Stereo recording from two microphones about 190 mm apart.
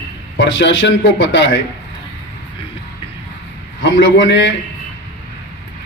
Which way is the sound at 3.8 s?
70° left (ahead or behind).